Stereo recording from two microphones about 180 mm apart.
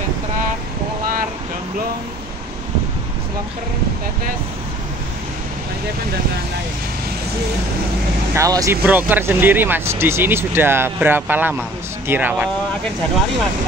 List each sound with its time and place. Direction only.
8.4 s speech: 20° right (ahead or behind)